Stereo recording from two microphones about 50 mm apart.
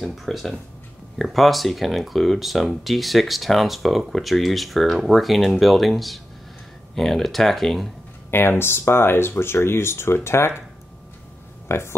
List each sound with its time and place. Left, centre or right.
0.0 s speech: centre
8.3 s speech: left
11.6 s a sound: left